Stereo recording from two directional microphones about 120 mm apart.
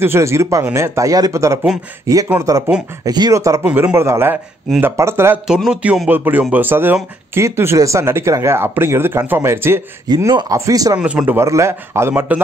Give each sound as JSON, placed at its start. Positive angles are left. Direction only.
{"t": 0.0, "sound": "speech", "side_deg": -20}
{"t": 3.6, "sound": "a man's voice", "side_deg": -15}
{"t": 5.5, "sound": "a man's voice", "side_deg": -5}
{"t": 10.0, "sound": "speech", "side_deg": -35}
{"t": 11.0, "sound": "a man's voice", "side_deg": -10}
{"t": 11.4, "sound": "speech", "side_deg": -25}